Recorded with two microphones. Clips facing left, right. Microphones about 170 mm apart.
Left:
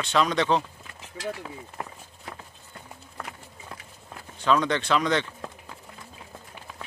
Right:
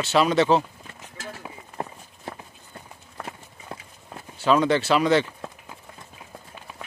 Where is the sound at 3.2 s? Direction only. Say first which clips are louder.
Right 3 dB; 25° right (ahead or behind).